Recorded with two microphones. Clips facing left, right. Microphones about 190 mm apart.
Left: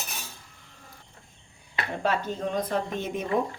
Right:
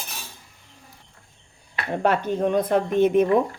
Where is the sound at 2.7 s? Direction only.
60° right (ahead or behind).